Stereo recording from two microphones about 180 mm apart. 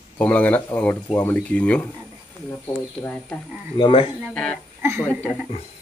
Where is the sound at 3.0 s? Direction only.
10° left (ahead or behind).